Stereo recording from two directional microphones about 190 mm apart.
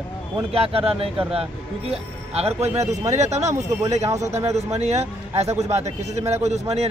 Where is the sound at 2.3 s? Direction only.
35° right (ahead or behind).